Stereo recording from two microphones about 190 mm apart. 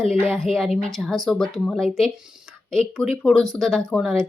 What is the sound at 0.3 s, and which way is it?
Speech, centre (ahead or behind).